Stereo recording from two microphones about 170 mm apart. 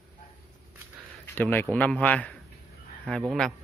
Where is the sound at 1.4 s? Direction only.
10° left (ahead or behind).